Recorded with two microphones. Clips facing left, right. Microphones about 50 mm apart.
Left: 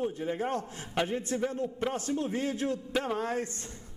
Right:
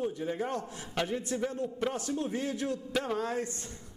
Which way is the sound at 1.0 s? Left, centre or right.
Centre.